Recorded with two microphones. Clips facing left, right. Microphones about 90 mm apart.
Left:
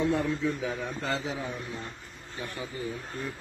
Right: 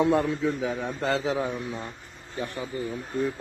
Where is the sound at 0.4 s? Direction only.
35° right (ahead or behind).